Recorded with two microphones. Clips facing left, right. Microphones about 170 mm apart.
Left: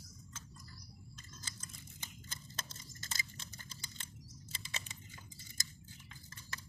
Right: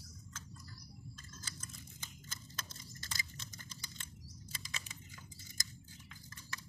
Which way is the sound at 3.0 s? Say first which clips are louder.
Left 1 dB; 30° left (ahead or behind).